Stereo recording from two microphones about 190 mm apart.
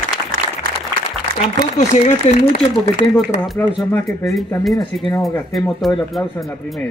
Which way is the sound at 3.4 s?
Centre (ahead or behind).